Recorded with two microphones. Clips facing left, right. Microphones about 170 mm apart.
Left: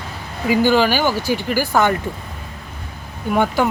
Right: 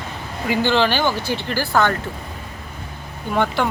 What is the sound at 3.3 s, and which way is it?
Speech, 10° left (ahead or behind).